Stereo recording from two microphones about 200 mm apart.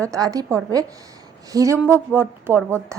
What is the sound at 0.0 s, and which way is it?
A woman's voice, 15° right (ahead or behind).